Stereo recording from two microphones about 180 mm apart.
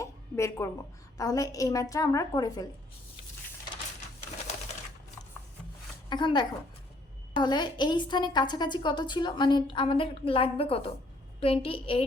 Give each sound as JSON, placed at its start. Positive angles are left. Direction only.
{"t": 0.0, "sound": "a sound", "side_deg": 15}
{"t": 1.1, "sound": "a woman's voice", "side_deg": 20}
{"t": 6.1, "sound": "a woman's voice", "side_deg": 25}